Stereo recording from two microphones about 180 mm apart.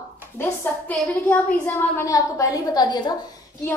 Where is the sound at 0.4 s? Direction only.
10° left (ahead or behind).